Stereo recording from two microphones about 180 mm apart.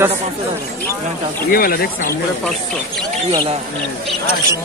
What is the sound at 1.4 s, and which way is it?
Speech, 55° left (ahead or behind).